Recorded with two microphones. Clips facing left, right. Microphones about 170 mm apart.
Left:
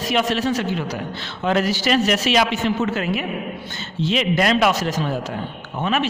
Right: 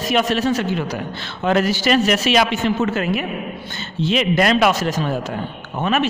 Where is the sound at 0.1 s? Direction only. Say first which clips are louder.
Right 2 dB; 50° right (ahead or behind).